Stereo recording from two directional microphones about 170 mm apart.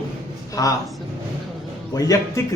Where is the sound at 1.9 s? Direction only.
20° left (ahead or behind).